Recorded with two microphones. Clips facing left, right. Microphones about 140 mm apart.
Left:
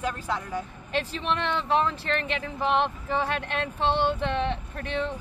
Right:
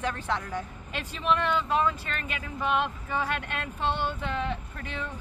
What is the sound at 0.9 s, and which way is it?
Speech, 30° left (ahead or behind).